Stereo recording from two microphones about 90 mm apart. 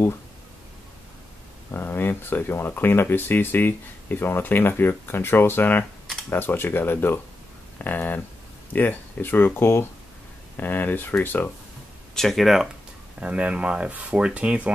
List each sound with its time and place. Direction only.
1.7 s speech: 25° left (ahead or behind)
12.2 s speech: centre (ahead or behind)
13.2 s speech: 15° right (ahead or behind)